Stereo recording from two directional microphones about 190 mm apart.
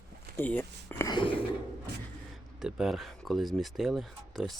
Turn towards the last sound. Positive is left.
turn(degrees=0)  # may be behind; listen again after turning